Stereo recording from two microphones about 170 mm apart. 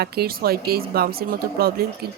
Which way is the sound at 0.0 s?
65° right (ahead or behind).